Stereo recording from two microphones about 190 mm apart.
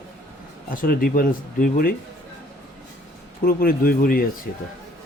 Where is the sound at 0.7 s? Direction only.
50° left (ahead or behind).